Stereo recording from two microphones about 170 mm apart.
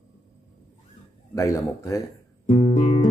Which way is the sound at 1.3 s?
20° left (ahead or behind).